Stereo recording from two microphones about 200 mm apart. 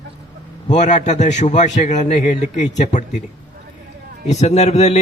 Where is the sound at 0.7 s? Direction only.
35° left (ahead or behind).